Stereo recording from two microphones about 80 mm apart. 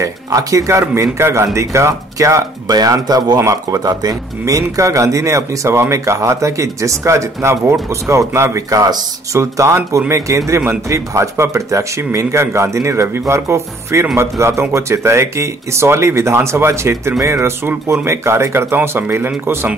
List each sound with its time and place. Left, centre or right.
0.0 s a man's voice: right